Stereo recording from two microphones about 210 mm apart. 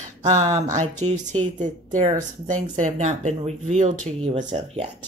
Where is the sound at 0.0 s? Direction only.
35° right (ahead or behind).